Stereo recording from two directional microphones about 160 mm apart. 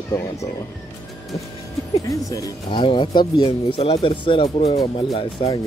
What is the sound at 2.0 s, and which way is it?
Speech, 20° left (ahead or behind).